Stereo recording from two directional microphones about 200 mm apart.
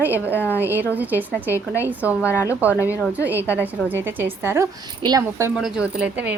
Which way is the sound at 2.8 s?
5° right (ahead or behind).